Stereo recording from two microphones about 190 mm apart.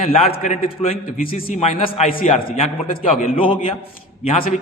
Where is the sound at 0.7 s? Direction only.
30° left (ahead or behind).